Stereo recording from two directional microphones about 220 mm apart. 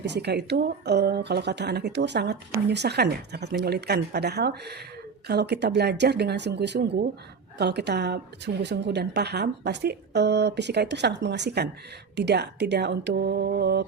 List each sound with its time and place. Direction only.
0.0 s speech: 50° right (ahead or behind)